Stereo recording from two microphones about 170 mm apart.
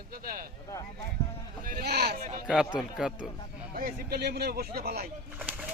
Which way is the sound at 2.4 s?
5° right (ahead or behind).